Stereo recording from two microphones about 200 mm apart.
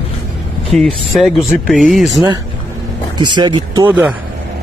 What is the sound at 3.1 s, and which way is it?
Speech, 20° right (ahead or behind).